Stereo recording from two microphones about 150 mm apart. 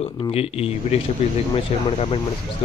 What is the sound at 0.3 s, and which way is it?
Speech, 40° left (ahead or behind).